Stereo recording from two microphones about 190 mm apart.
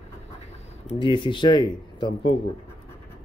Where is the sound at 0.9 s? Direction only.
25° left (ahead or behind).